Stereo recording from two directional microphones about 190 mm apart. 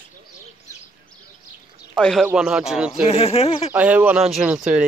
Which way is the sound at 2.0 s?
5° left (ahead or behind).